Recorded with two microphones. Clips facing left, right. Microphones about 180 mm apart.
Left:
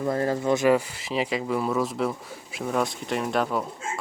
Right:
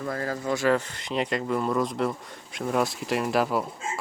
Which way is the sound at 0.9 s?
5° left (ahead or behind).